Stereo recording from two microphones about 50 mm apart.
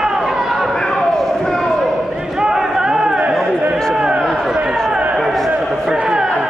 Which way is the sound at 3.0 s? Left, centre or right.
Right.